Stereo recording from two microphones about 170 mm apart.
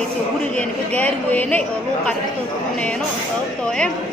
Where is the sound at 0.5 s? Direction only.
10° left (ahead or behind).